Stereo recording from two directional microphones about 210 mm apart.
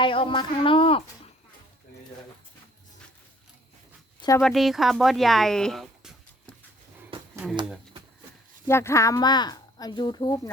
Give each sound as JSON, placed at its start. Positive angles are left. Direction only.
{"t": 0.0, "sound": "a woman's voice", "side_deg": 25}
{"t": 4.4, "sound": "speech", "side_deg": 0}
{"t": 7.1, "sound": "a sound", "side_deg": -25}
{"t": 8.6, "sound": "a woman's voice", "side_deg": 10}